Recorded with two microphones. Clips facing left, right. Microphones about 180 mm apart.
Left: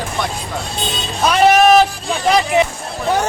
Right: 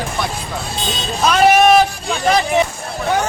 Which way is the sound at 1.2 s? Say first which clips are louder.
Even; centre (ahead or behind).